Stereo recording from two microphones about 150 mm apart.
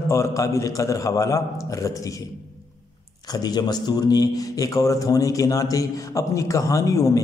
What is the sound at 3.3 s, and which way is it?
A man's voice, 25° left (ahead or behind).